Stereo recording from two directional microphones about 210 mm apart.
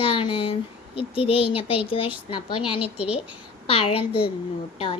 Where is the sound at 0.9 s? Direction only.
25° left (ahead or behind).